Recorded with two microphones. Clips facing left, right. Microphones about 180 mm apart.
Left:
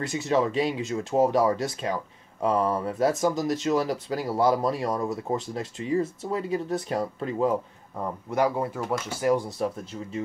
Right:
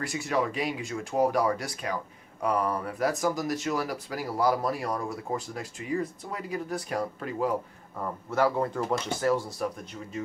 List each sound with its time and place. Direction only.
0.0 s speech: 20° left (ahead or behind)